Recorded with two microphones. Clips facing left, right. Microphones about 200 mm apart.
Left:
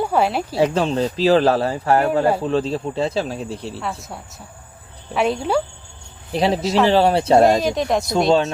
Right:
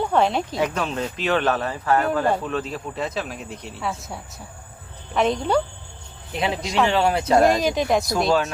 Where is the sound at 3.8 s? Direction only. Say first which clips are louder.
Left 1 dB; centre (ahead or behind).